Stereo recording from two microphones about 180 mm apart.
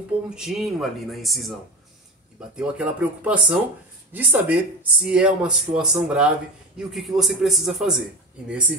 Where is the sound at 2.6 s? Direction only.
5° right (ahead or behind).